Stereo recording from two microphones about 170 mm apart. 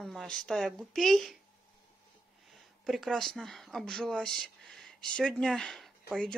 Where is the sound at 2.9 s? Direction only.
Centre (ahead or behind).